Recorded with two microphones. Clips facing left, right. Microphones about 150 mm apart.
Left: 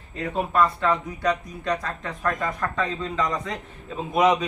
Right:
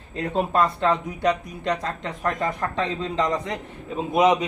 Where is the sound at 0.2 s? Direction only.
25° right (ahead or behind).